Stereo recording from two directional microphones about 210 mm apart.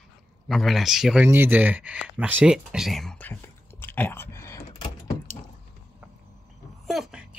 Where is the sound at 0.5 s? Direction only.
Centre (ahead or behind).